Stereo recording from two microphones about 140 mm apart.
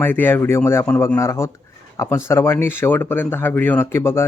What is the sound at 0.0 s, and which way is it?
Speech, 15° left (ahead or behind).